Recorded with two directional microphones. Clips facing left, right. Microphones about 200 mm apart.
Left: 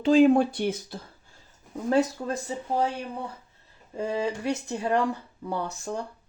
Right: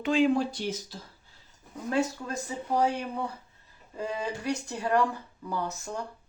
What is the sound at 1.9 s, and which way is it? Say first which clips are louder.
Speech: left 5 dB; 35° left (ahead or behind).